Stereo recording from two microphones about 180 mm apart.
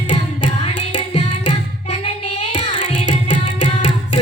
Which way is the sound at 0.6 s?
30° left (ahead or behind).